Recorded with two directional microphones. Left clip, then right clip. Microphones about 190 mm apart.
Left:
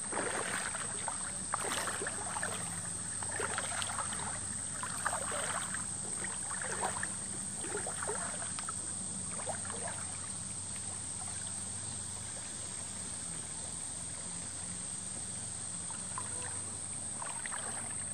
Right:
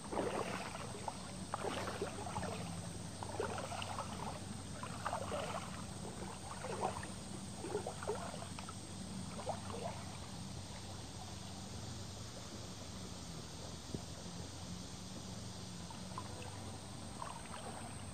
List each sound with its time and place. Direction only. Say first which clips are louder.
0.1 s rowboat: left 3 dB; 10° right (ahead or behind)
1.5 s rowboat: left 5 dB; 20° left (ahead or behind)
3.3 s rowboat: left 5 dB; 10° left (ahead or behind)
5.0 s rowboat: left 4 dB; 10° left (ahead or behind)
6.6 s rowboat: left 3 dB; 5° left (ahead or behind)
7.7 s boat: left 2 dB; 15° left (ahead or behind)